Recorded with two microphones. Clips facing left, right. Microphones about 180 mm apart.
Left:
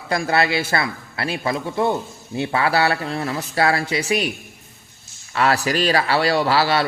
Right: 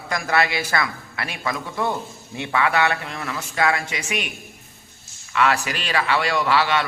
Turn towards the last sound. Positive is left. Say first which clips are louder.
# left 2 dB
turn(degrees=35)  # may be behind; listen again after turning